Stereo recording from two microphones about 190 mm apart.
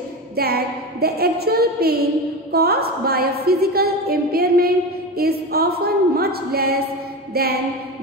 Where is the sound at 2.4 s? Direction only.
55° right (ahead or behind).